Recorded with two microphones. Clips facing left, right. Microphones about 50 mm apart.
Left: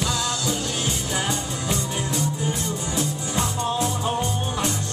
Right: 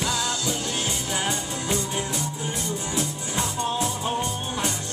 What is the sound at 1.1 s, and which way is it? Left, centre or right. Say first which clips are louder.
Music: even; centre.